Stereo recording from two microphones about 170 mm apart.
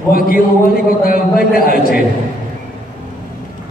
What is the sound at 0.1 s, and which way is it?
A man's voice, 60° left (ahead or behind).